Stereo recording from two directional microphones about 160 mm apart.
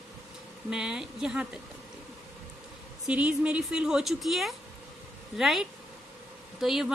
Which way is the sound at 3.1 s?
10° right (ahead or behind).